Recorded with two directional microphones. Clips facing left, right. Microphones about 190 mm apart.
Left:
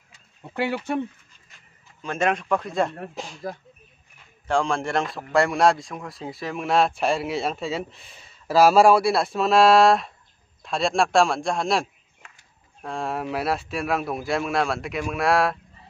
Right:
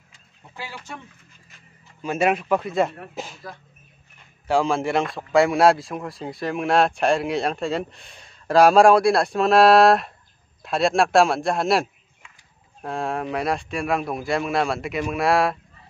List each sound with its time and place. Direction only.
0.1 s bird: 65° left (ahead or behind)
2.0 s speech: 10° right (ahead or behind)
4.5 s speech: 5° right (ahead or behind)